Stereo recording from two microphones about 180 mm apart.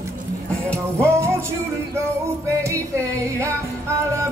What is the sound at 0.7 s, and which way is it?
Music, 5° left (ahead or behind).